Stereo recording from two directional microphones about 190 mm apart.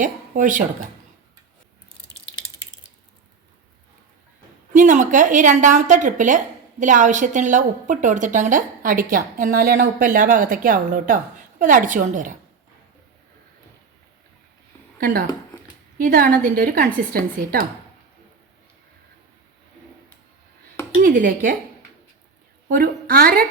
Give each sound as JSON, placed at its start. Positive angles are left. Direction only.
{"t": 0.0, "sound": "speech", "side_deg": -45}
{"t": 4.7, "sound": "a woman's voice", "side_deg": -40}
{"t": 14.9, "sound": "a woman's voice", "side_deg": -50}
{"t": 21.0, "sound": "a woman's voice", "side_deg": -45}
{"t": 22.7, "sound": "a woman's voice", "side_deg": -50}